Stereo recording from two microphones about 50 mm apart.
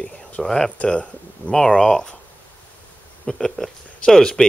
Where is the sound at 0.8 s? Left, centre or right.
Left.